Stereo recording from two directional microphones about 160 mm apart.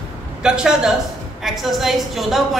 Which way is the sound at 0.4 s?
5° right (ahead or behind).